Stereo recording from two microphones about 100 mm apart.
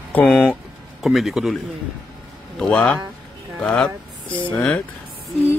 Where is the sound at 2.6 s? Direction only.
10° left (ahead or behind).